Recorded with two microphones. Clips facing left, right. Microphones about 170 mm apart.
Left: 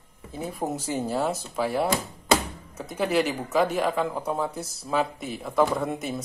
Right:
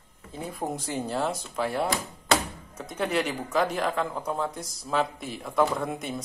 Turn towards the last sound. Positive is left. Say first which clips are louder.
# left 3 dB
turn(degrees=0)  # may be behind; listen again after turning